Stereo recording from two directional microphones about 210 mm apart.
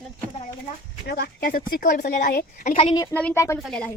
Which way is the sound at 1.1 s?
50° left (ahead or behind).